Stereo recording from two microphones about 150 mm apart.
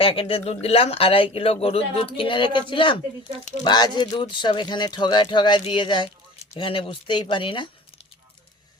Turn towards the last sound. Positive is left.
turn(degrees=35)  # may be behind; listen again after turning